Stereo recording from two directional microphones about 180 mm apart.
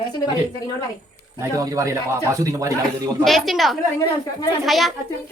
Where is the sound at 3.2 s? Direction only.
Centre (ahead or behind).